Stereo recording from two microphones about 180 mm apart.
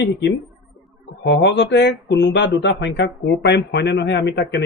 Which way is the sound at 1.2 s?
75° left (ahead or behind).